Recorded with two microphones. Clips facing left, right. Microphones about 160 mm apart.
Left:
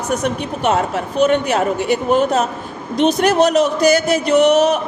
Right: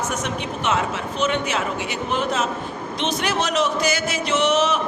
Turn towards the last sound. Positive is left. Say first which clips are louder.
# left 7 dB
turn(degrees=40)  # may be behind; listen again after turning